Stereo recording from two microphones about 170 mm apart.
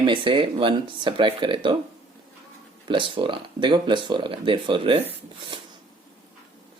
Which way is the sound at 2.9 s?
30° right (ahead or behind).